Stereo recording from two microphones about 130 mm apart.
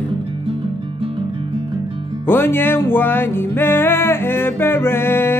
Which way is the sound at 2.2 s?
15° left (ahead or behind).